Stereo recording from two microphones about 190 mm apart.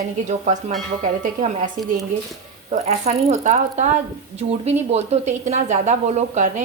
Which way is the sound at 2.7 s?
35° right (ahead or behind).